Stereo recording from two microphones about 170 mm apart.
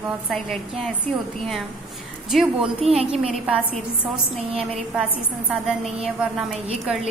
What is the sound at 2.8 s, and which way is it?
Speech, 35° right (ahead or behind).